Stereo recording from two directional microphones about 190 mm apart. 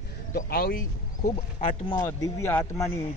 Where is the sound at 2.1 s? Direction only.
15° left (ahead or behind).